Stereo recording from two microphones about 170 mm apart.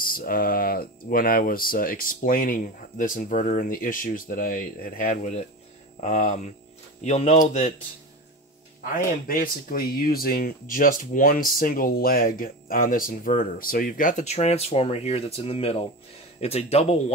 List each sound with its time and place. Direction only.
0.0 s speech: 55° left (ahead or behind); by 7.7 s 40° left (ahead or behind)
8.8 s speech: 60° left (ahead or behind); by 17.0 s 40° left (ahead or behind)